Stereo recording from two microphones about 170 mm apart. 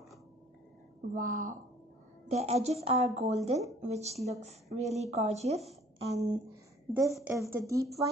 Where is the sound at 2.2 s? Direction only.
40° right (ahead or behind).